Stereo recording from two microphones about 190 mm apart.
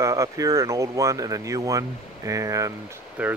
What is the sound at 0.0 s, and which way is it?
Speech, 15° right (ahead or behind).